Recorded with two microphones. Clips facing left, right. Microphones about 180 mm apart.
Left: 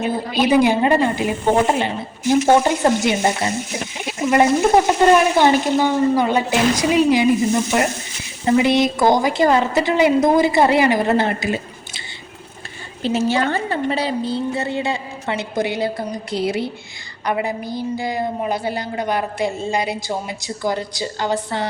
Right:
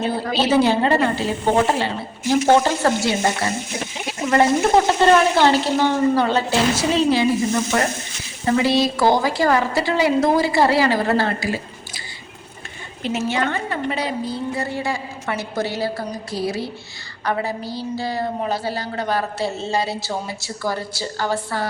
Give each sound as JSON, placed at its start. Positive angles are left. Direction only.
{"t": 0.3, "sound": "a woman's voice", "side_deg": 15}